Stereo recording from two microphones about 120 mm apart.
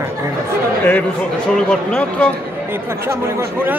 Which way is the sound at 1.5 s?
10° left (ahead or behind).